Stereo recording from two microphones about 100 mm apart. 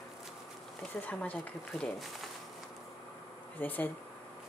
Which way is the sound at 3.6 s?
15° left (ahead or behind).